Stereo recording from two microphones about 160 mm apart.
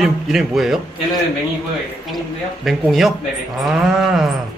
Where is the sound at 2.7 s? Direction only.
Centre (ahead or behind).